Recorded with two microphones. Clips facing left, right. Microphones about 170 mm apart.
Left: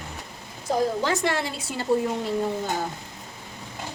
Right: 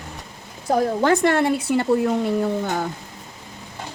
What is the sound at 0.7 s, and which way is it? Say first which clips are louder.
Speech: right 5 dB; 55° right (ahead or behind).